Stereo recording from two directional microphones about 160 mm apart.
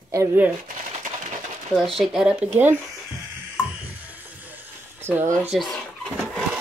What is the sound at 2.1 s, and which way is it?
Speech, 5° right (ahead or behind).